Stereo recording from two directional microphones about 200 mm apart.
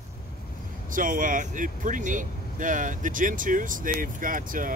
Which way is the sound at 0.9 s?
40° right (ahead or behind).